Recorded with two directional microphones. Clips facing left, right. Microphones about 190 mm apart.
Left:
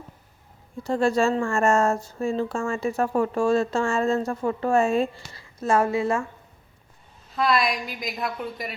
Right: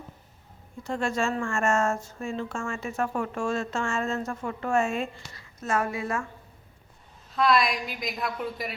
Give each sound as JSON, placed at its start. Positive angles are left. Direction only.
{"t": 0.9, "sound": "speech", "side_deg": 35}
{"t": 7.3, "sound": "a woman's voice", "side_deg": 0}